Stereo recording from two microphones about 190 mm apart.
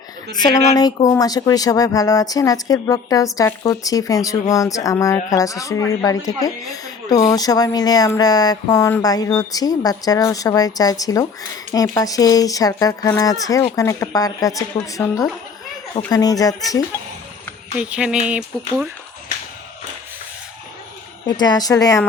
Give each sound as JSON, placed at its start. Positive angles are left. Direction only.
{"t": 0.3, "sound": "speech", "side_deg": 20}
{"t": 17.7, "sound": "speech", "side_deg": -5}
{"t": 21.2, "sound": "speech", "side_deg": 20}